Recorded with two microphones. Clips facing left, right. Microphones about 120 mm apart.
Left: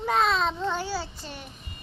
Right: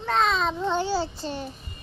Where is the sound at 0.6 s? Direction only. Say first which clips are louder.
Right 4 dB; 25° right (ahead or behind).